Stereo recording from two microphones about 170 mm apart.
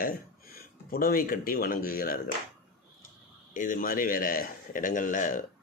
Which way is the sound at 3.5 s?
50° left (ahead or behind).